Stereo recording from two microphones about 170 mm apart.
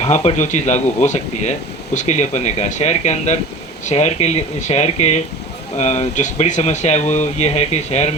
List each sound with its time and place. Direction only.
0.0 s speech: 40° left (ahead or behind)